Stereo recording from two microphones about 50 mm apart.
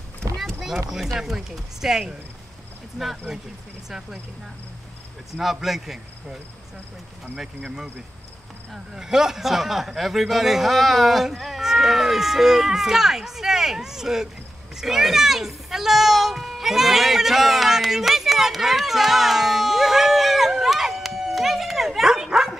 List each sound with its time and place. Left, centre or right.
0.2 s boat: centre
0.8 s a man's voice: centre
3.0 s cricket: centre
5.3 s cricket: centre
7.3 s a man's voice: centre
14.8 s a sound: centre